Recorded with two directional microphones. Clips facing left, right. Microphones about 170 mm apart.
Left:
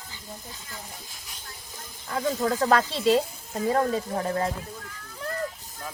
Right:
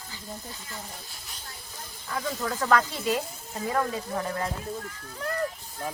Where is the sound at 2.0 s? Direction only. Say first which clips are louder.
Left 5 dB; 40° left (ahead or behind).